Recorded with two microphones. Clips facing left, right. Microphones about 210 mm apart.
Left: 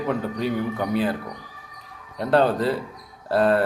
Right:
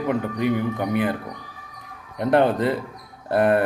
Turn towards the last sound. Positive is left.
turn(degrees=-20)  # may be behind; listen again after turning